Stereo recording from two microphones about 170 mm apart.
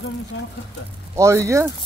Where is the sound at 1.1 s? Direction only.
15° right (ahead or behind).